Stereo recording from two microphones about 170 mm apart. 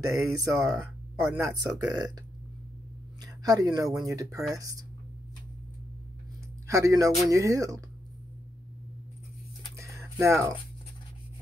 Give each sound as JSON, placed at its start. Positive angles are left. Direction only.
{"t": 0.4, "sound": "speech", "side_deg": -20}
{"t": 0.7, "sound": "speech", "side_deg": -5}
{"t": 1.4, "sound": "speech", "side_deg": -20}
{"t": 3.2, "sound": "a sound", "side_deg": -20}
{"t": 4.0, "sound": "speech", "side_deg": -20}
{"t": 6.7, "sound": "speech", "side_deg": -20}
{"t": 9.8, "sound": "a sound", "side_deg": -15}